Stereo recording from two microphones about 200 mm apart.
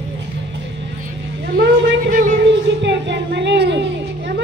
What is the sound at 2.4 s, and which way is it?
Music, 60° right (ahead or behind).